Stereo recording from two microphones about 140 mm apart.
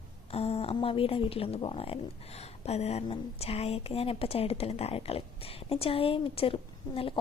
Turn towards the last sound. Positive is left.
turn(degrees=40)  # may be behind; listen again after turning